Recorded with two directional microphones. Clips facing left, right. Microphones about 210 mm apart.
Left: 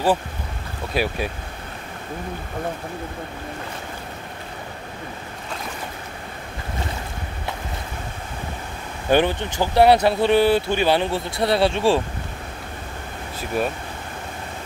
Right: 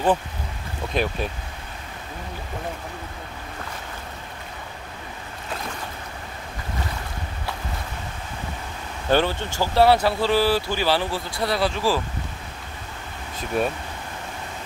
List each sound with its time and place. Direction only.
0.9 s speech: 10° left (ahead or behind)
9.1 s speech: 15° left (ahead or behind)
13.5 s speech: 5° left (ahead or behind)